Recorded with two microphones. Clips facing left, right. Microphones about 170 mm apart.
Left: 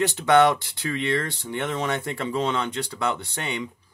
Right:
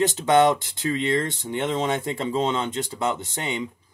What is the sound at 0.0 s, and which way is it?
Speech, 15° right (ahead or behind).